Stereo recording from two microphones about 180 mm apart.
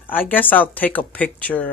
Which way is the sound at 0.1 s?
10° left (ahead or behind).